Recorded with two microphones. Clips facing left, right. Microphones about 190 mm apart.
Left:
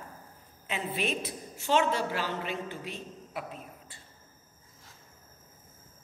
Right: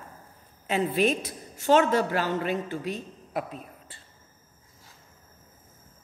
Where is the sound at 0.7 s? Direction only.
40° right (ahead or behind).